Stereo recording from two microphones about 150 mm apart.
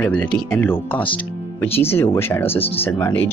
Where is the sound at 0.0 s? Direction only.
10° left (ahead or behind).